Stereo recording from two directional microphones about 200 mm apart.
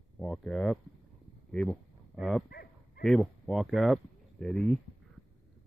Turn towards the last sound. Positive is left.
turn(degrees=5)  # may be behind; listen again after turning